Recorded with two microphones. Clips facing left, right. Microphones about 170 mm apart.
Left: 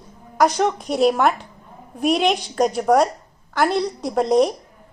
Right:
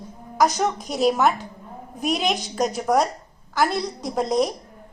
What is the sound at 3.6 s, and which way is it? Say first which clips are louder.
Speech: left 5 dB; 35° left (ahead or behind).